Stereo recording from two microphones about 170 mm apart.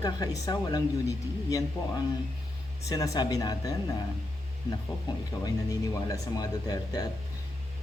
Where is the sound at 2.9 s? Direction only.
20° left (ahead or behind).